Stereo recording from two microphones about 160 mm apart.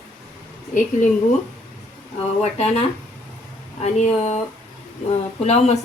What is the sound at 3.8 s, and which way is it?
Speech, 45° left (ahead or behind).